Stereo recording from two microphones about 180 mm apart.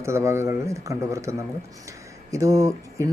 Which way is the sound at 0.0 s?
15° right (ahead or behind).